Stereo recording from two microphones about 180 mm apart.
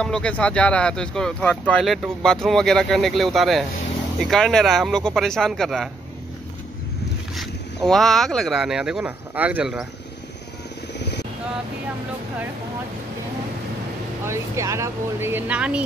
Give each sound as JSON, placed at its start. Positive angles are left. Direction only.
{"t": 0.0, "sound": "speech", "side_deg": 5}
{"t": 7.3, "sound": "speech", "side_deg": 0}
{"t": 11.0, "sound": "vehicle", "side_deg": 70}
{"t": 14.2, "sound": "speech", "side_deg": -15}